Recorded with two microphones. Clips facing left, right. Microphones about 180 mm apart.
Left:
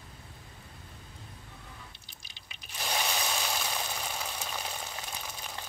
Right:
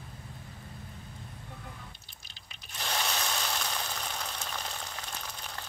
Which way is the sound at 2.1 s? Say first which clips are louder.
Left 1 dB; 5° left (ahead or behind).